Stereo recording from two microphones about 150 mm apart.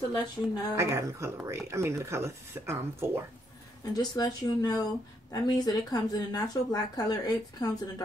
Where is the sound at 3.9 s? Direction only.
25° left (ahead or behind).